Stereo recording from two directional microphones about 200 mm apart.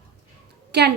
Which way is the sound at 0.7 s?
55° right (ahead or behind).